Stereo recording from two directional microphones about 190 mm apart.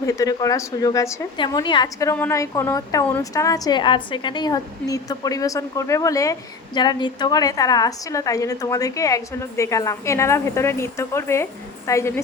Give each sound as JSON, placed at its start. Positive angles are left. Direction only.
{"t": 0.0, "sound": "a woman's voice", "side_deg": 15}